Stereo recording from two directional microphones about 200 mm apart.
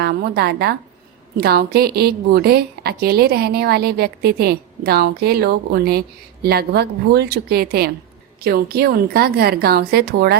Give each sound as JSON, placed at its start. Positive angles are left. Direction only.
{"t": 0.0, "sound": "a woman's voice", "side_deg": -50}